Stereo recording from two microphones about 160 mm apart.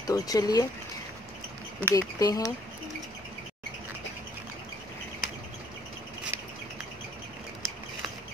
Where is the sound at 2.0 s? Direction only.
25° left (ahead or behind).